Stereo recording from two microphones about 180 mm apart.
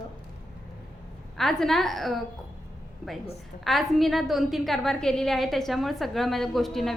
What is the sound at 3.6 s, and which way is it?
A woman's voice, centre (ahead or behind).